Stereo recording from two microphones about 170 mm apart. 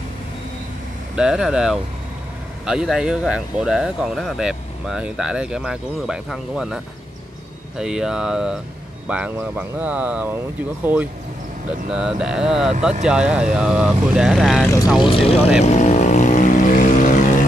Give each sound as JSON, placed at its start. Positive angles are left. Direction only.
{"t": 1.1, "sound": "speech", "side_deg": -5}
{"t": 11.9, "sound": "speech", "side_deg": -5}
{"t": 15.0, "sound": "speech", "side_deg": 35}
{"t": 15.6, "sound": "vehicle", "side_deg": 40}